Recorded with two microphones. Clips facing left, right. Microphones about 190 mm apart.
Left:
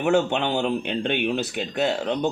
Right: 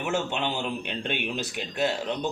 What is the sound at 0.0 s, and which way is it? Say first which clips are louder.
Speech: left 7 dB; 60° left (ahead or behind).